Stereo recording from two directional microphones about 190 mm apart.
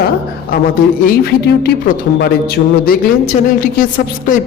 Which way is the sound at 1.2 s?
55° left (ahead or behind).